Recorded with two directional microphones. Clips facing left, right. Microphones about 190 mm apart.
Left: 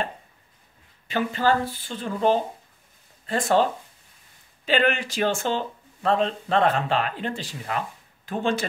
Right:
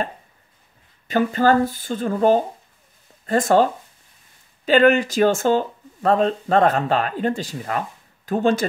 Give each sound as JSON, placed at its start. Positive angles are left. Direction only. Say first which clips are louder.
{"t": 1.0, "sound": "speech", "louder": "right 5 dB", "side_deg": -45}
{"t": 4.6, "sound": "speech", "louder": "right 8 dB", "side_deg": -45}